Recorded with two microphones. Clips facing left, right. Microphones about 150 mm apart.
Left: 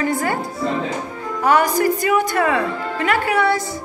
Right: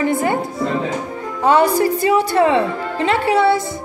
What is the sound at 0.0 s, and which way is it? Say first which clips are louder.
Speech: right 3 dB; 20° right (ahead or behind).